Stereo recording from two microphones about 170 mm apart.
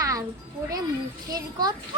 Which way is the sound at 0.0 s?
20° right (ahead or behind).